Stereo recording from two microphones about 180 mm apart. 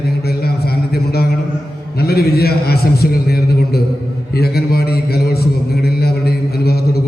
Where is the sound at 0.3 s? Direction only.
60° left (ahead or behind).